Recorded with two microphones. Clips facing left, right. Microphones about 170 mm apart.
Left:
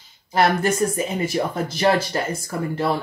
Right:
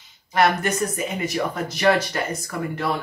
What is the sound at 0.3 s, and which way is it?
Speech, 30° left (ahead or behind).